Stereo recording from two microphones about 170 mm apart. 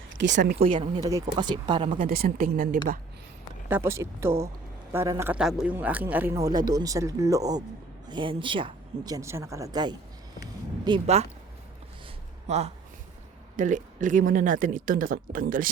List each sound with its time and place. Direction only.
0.2 s speech: 90° right
0.6 s speech: 35° right (ahead or behind)
2.0 s speech: 60° right (ahead or behind)
3.7 s speech: 15° right (ahead or behind)
5.4 s speech: 5° right (ahead or behind); by 9.9 s 20° right (ahead or behind)
11.0 s speech: 40° right (ahead or behind)
12.5 s speech: 40° right (ahead or behind)